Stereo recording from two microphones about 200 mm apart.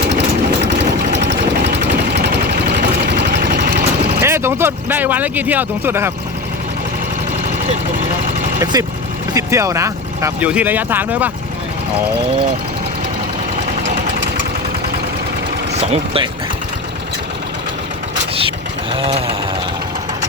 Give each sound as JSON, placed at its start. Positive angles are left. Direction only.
{"t": 0.6, "sound": "vehicle", "side_deg": -60}
{"t": 4.2, "sound": "a sound", "side_deg": -10}
{"t": 8.7, "sound": "sewing machine", "side_deg": -20}
{"t": 9.3, "sound": "speech", "side_deg": -15}
{"t": 15.7, "sound": "speech", "side_deg": -30}
{"t": 18.9, "sound": "sewing machine", "side_deg": -30}